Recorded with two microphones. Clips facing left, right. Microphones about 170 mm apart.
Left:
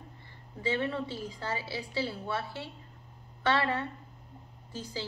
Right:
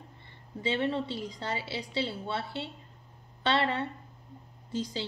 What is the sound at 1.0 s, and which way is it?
Speech, 75° right (ahead or behind).